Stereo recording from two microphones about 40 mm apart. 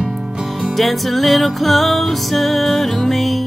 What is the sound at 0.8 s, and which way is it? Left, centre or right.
Music, centre.